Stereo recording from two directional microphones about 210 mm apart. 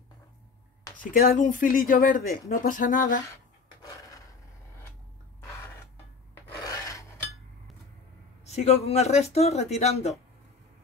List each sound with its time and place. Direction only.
1.1 s speech: 45° left (ahead or behind)
6.6 s filing: 15° left (ahead or behind)
8.5 s speech: 30° left (ahead or behind)